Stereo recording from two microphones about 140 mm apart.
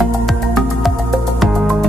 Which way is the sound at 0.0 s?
Centre (ahead or behind).